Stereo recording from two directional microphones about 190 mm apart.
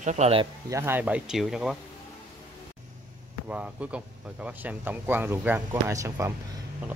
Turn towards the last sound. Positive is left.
turn(degrees=-15)  # may be behind; listen again after turning